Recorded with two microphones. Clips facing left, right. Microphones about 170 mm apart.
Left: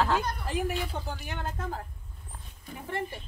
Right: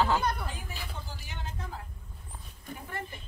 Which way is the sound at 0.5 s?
80° left.